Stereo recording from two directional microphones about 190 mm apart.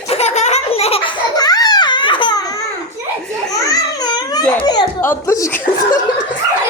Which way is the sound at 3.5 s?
20° left (ahead or behind).